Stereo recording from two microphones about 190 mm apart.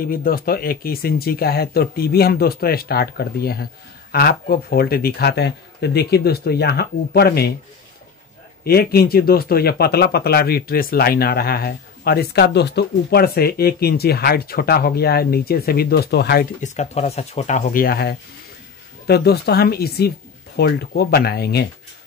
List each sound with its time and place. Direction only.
0.0 s speech: 50° left (ahead or behind)
8.6 s speech: 55° left (ahead or behind)
16.6 s speech: 40° left (ahead or behind); by 21.6 s 60° left (ahead or behind)